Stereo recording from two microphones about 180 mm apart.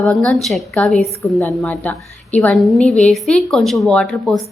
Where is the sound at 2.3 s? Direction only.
5° left (ahead or behind).